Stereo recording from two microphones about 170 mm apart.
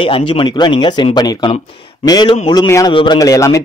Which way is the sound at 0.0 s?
30° left (ahead or behind).